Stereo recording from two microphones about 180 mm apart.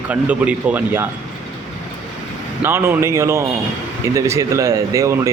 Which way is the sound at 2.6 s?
15° right (ahead or behind).